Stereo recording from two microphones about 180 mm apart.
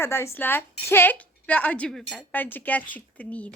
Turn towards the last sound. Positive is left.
turn(degrees=5)  # may be behind; listen again after turning